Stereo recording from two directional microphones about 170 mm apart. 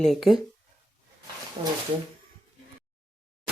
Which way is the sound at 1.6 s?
35° right (ahead or behind).